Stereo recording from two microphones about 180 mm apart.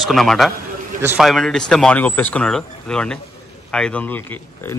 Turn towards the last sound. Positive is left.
turn(degrees=10)  # may be behind; listen again after turning